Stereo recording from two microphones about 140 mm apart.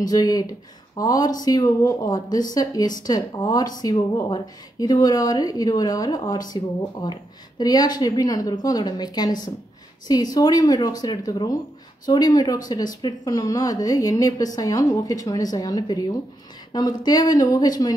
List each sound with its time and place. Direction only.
0.0 s speech: 25° left (ahead or behind)